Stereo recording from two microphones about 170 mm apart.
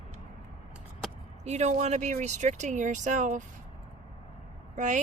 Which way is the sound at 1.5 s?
40° right (ahead or behind).